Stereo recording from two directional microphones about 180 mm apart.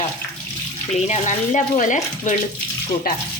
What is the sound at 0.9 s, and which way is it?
Speech, 40° left (ahead or behind).